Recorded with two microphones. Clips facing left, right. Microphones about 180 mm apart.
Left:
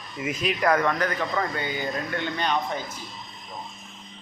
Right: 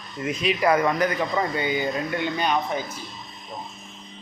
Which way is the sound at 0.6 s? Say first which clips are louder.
Right 2 dB; 10° right (ahead or behind).